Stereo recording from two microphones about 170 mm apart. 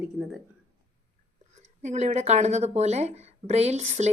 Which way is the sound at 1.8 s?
40° right (ahead or behind).